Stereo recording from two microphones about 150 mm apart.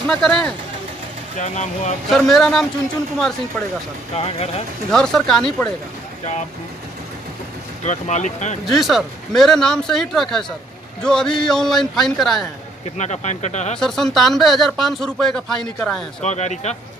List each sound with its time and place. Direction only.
0.0 s speech: 5° left (ahead or behind)
1.4 s speech: 50° left (ahead or behind)
2.0 s speech: centre (ahead or behind)
4.1 s speech: 40° left (ahead or behind)
4.9 s speech: 5° left (ahead or behind)
7.8 s speech: 50° left (ahead or behind)
8.6 s speech: centre (ahead or behind)
12.9 s speech: 50° left (ahead or behind)
13.7 s speech: 5° left (ahead or behind)
16.2 s speech: 50° left (ahead or behind)